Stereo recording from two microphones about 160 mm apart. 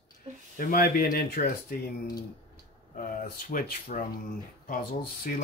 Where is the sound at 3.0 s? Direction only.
60° left (ahead or behind).